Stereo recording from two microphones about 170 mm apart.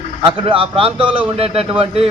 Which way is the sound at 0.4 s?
35° right (ahead or behind).